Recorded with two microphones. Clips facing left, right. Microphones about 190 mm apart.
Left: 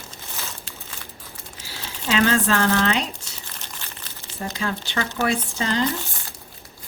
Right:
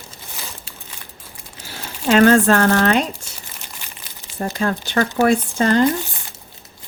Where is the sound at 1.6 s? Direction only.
55° right (ahead or behind).